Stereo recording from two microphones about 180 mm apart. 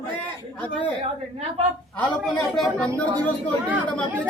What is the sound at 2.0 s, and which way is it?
Speech, 5° left (ahead or behind).